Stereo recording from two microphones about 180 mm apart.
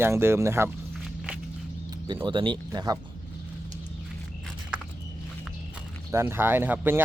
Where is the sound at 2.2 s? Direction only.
25° right (ahead or behind).